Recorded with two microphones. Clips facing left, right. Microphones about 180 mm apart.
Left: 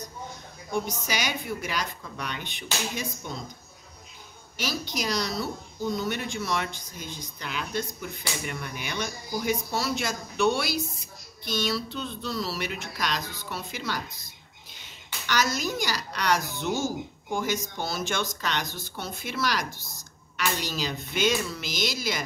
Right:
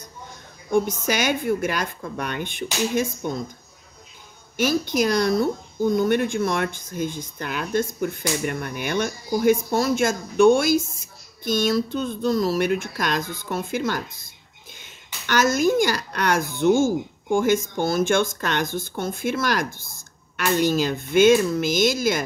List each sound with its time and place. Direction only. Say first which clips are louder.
0.7 s speech: right 9 dB; 50° right (ahead or behind)
4.6 s speech: right 11 dB; 50° right (ahead or behind)
15.2 s speech: right 8 dB; 50° right (ahead or behind)